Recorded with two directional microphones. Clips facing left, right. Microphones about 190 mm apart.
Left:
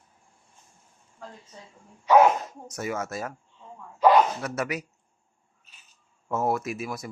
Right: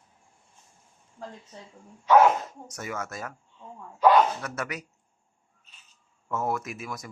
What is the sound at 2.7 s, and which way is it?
Speech, 25° left (ahead or behind).